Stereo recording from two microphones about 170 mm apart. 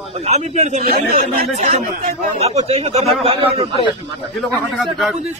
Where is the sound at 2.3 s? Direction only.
35° right (ahead or behind).